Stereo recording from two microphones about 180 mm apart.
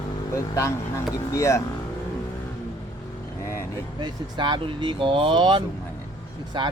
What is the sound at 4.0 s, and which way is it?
Speech, 25° right (ahead or behind).